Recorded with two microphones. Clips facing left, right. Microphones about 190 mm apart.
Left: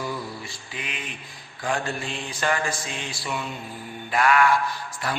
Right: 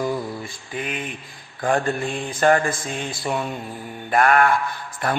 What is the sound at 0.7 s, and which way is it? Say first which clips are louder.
Mantra: right 8 dB; 50° right (ahead or behind).